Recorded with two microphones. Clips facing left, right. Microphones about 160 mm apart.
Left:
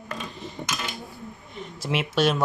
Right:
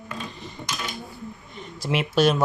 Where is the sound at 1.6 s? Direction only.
Centre (ahead or behind).